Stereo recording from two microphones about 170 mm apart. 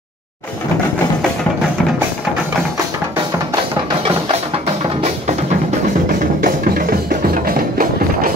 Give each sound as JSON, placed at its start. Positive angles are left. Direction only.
{"t": 6.4, "sound": "music", "side_deg": -55}